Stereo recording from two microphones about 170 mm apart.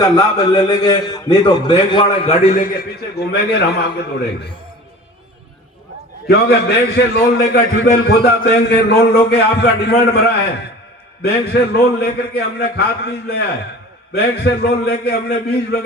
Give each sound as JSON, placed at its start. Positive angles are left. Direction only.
{"t": 0.0, "sound": "a man's voice", "side_deg": 20}
{"t": 2.7, "sound": "a man's voice", "side_deg": 70}
{"t": 6.2, "sound": "a man's voice", "side_deg": 75}
{"t": 11.2, "sound": "a man's voice", "side_deg": 70}